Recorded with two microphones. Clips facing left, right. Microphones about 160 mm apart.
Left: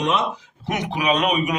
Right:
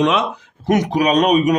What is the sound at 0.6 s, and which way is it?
Speech, 45° right (ahead or behind).